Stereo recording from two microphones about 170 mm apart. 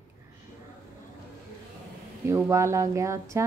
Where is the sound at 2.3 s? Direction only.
15° right (ahead or behind).